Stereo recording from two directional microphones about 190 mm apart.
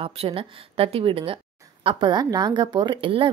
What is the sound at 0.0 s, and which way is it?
A woman's voice, 30° right (ahead or behind).